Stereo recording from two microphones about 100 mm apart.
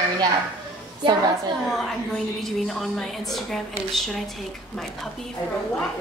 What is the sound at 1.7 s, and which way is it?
A woman's voice, centre (ahead or behind).